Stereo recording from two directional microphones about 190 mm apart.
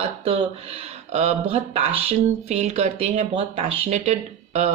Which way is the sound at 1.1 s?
35° right (ahead or behind).